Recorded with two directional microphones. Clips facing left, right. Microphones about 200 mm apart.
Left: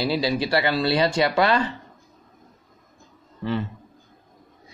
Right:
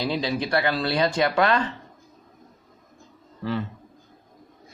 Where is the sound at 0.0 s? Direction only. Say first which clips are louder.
Left 3 dB; 5° left (ahead or behind).